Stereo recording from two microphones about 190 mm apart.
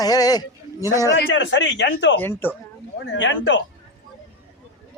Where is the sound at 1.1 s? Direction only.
75° left (ahead or behind).